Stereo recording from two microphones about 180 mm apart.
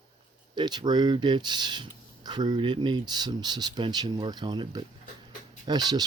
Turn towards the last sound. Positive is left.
turn(degrees=-20)  # may be behind; listen again after turning